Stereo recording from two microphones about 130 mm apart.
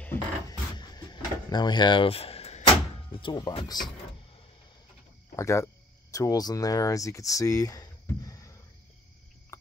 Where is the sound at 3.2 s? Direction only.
40° left (ahead or behind).